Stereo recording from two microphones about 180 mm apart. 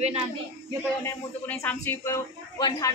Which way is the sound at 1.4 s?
10° left (ahead or behind).